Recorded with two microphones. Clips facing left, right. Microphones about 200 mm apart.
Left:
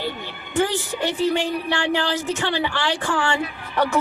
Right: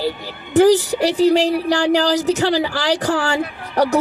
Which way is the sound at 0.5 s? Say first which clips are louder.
Right 10 dB; 40° right (ahead or behind).